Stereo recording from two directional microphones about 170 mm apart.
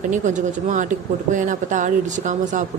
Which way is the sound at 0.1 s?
45° right (ahead or behind).